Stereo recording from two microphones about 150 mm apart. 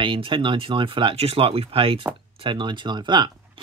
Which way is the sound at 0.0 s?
35° right (ahead or behind).